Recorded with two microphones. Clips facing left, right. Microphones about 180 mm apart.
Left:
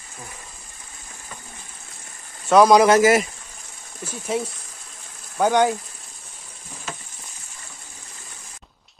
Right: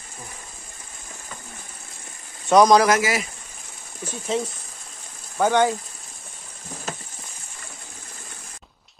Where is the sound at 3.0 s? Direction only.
45° left (ahead or behind).